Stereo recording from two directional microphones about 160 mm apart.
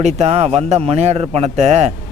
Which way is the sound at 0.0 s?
40° right (ahead or behind).